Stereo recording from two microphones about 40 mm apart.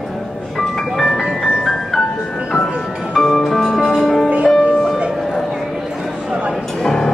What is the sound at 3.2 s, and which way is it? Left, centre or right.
Music, centre.